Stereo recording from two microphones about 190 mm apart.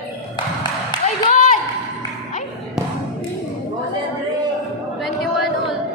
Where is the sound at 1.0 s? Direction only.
45° left (ahead or behind).